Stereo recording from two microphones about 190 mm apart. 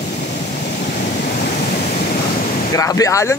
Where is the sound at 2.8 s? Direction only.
15° left (ahead or behind).